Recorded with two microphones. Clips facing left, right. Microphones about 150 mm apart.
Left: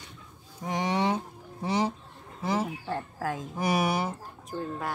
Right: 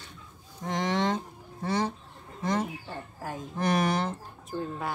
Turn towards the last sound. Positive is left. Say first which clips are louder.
# even
turn(degrees=0)  # may be behind; listen again after turning